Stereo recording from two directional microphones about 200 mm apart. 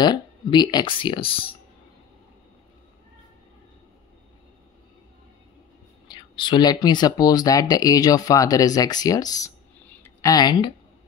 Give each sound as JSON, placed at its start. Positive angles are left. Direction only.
{"t": 0.0, "sound": "speech", "side_deg": 20}
{"t": 6.0, "sound": "speech", "side_deg": 20}